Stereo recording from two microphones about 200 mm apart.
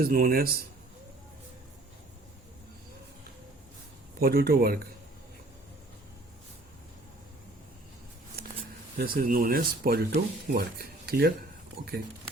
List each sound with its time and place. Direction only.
0.0 s speech: 50° right (ahead or behind)
4.2 s speech: 50° right (ahead or behind)
9.0 s speech: 45° right (ahead or behind)